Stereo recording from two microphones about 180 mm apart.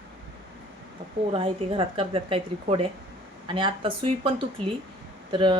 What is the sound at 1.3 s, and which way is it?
Speech, 30° right (ahead or behind).